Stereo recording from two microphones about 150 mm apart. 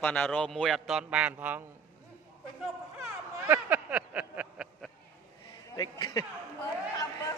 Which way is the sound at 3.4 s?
15° right (ahead or behind).